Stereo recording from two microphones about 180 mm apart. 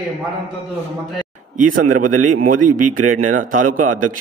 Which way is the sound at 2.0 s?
45° right (ahead or behind).